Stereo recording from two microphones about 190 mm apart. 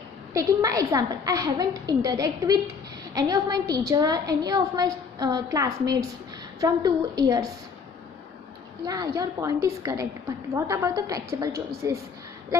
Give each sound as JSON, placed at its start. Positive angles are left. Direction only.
{"t": 0.3, "sound": "a woman's voice", "side_deg": -15}
{"t": 8.8, "sound": "a woman's voice", "side_deg": -20}